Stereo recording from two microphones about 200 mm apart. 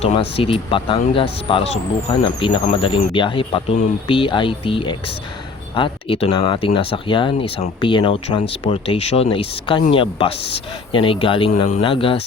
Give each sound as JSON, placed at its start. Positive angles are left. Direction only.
{"t": 0.0, "sound": "speech", "side_deg": 30}